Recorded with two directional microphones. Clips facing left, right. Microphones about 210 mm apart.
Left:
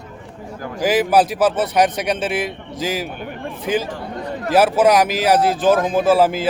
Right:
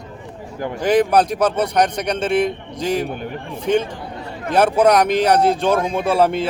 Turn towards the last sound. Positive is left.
turn(degrees=0)  # may be behind; listen again after turning